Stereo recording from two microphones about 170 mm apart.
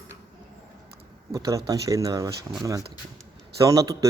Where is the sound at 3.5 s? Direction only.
20° right (ahead or behind).